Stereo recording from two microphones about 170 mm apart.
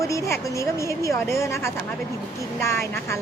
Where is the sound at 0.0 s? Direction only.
20° left (ahead or behind).